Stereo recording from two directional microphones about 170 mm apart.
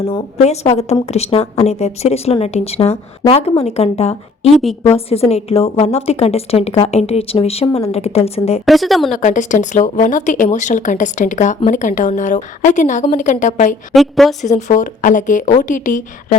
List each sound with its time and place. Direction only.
0.0 s speech: 30° left (ahead or behind)
0.3 s a woman's voice: 40° left (ahead or behind)
4.5 s speech: centre (ahead or behind)
4.9 s a woman's voice: 35° left (ahead or behind)
8.6 s speech: centre (ahead or behind)
9.1 s speech: 45° left (ahead or behind)
13.9 s speech: centre (ahead or behind)
14.4 s speech: 45° left (ahead or behind)